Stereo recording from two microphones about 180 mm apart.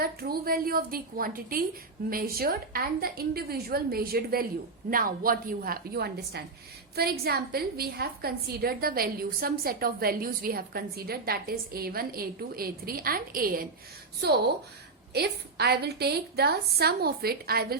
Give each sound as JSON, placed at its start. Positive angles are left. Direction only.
{"t": 0.0, "sound": "a woman's voice", "side_deg": -55}
{"t": 14.2, "sound": "a woman's voice", "side_deg": -65}